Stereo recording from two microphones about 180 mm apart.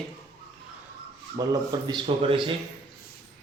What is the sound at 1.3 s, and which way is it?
A man's voice, 25° right (ahead or behind).